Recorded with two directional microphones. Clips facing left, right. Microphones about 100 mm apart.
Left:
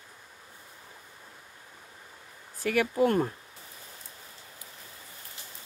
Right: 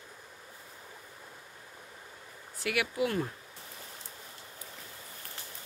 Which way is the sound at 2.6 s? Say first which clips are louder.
Left 6 dB; 40° left (ahead or behind).